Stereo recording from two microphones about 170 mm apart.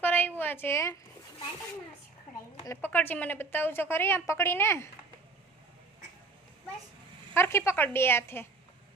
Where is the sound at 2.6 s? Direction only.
15° left (ahead or behind).